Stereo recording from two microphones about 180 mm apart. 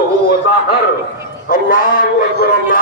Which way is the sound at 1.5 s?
50° left (ahead or behind).